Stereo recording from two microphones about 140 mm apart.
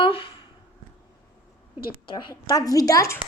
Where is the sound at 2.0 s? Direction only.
35° left (ahead or behind).